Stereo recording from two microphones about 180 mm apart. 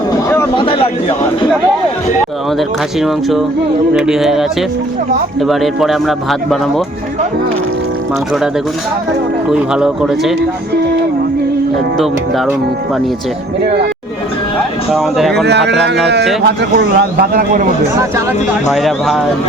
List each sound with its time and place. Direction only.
0.5 s a sound: 30° left (ahead or behind)
2.6 s a man's voice: centre (ahead or behind)
9.5 s a man's voice: 5° right (ahead or behind)
14.9 s a man's voice: centre (ahead or behind)
15.4 s a man's voice: 70° right (ahead or behind); by 17.6 s 55° right (ahead or behind)
18.7 s a man's voice: centre (ahead or behind)